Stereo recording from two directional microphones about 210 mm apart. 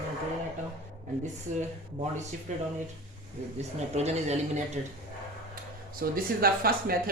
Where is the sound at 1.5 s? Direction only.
35° right (ahead or behind).